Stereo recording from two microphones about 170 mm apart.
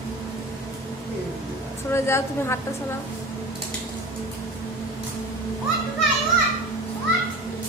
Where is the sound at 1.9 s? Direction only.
15° left (ahead or behind).